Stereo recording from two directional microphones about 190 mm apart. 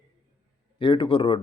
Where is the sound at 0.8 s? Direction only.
25° left (ahead or behind).